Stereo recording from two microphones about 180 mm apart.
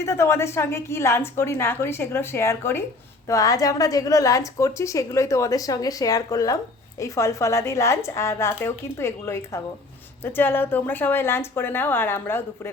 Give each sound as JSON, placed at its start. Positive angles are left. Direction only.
{"t": 0.0, "sound": "a woman's voice", "side_deg": 15}